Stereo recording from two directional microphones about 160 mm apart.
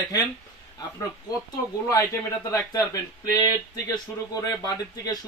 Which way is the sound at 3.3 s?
25° left (ahead or behind).